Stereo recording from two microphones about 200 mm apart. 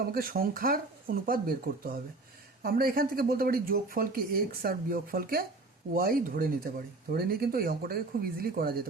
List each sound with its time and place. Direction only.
0.0 s speech: 50° right (ahead or behind)